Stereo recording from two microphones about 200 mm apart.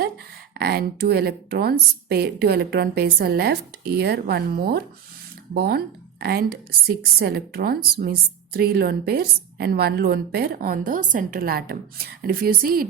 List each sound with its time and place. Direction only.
0.5 s a woman's voice: 55° right (ahead or behind)